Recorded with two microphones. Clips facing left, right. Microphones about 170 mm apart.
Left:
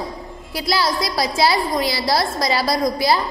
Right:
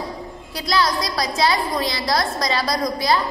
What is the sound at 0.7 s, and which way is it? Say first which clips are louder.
A woman's voice: even; 30° left (ahead or behind).